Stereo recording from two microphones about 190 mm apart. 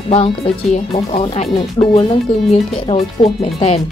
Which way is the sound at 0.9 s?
30° left (ahead or behind).